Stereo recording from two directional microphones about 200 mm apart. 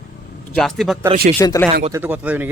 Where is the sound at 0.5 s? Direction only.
Centre (ahead or behind).